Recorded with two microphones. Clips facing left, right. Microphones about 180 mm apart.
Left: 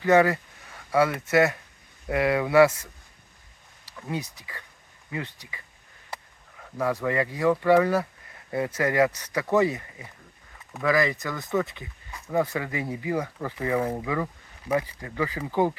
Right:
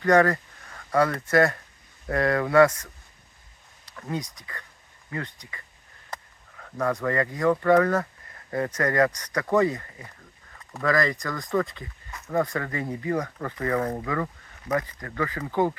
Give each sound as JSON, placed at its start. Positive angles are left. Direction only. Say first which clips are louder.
{"t": 0.0, "sound": "speech", "louder": "even", "side_deg": 5}
{"t": 6.7, "sound": "speech", "louder": "even", "side_deg": 5}